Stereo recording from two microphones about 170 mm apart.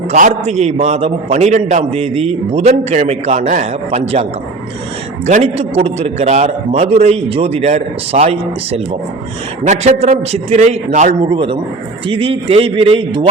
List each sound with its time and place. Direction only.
0.1 s a man's voice: 40° right (ahead or behind)
9.6 s a man's voice: 40° right (ahead or behind)
11.2 s a man's voice: 30° right (ahead or behind)